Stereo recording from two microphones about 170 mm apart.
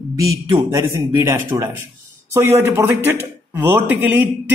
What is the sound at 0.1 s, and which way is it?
Speech, 20° right (ahead or behind).